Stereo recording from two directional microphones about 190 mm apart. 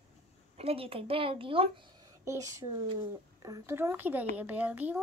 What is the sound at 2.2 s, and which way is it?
Speech, 15° right (ahead or behind).